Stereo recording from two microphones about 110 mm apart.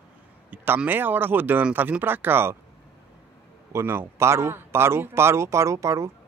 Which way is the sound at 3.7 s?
25° right (ahead or behind).